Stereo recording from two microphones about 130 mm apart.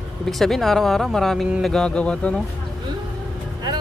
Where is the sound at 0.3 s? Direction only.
Centre (ahead or behind).